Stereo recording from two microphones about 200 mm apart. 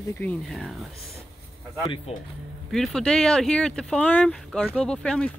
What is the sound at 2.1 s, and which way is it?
Speech, 30° left (ahead or behind).